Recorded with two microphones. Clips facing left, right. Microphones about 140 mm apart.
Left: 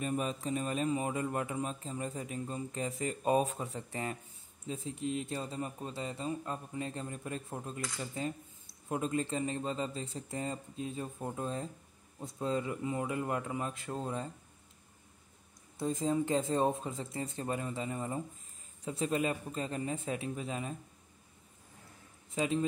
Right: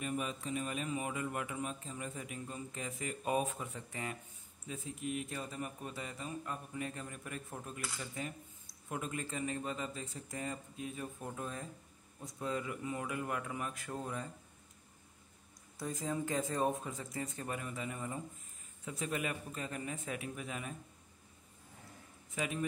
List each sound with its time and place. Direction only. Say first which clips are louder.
0.0 s a man's voice: left 4 dB; 35° left (ahead or behind)
15.8 s speech: left 6 dB; 25° left (ahead or behind)
22.3 s a man's voice: left 6 dB; 25° left (ahead or behind)